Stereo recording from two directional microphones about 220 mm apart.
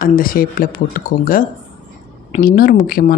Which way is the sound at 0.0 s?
40° left (ahead or behind).